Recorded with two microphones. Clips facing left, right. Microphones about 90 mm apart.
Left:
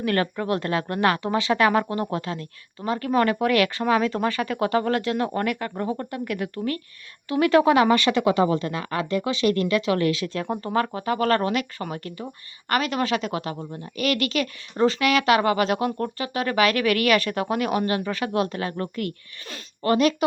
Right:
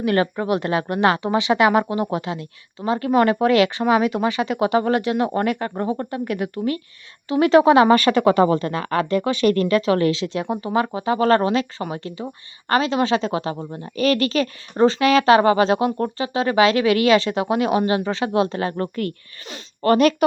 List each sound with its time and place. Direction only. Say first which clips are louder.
0.0 s a woman's voice: right 4 dB; 20° right (ahead or behind)
7.9 s speech: right 4 dB; 45° right (ahead or behind); by 10.5 s 20° right (ahead or behind)
10.5 s a woman's voice: right 2 dB; 10° right (ahead or behind); by 19.1 s 40° right (ahead or behind)
19.8 s speech: right 4 dB; 55° right (ahead or behind)